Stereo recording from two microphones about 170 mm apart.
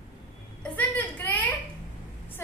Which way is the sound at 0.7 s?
10° left (ahead or behind).